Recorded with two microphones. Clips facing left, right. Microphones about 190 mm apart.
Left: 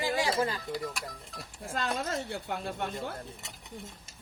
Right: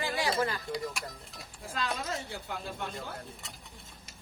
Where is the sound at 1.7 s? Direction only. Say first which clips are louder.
Left 2 dB; 55° left (ahead or behind).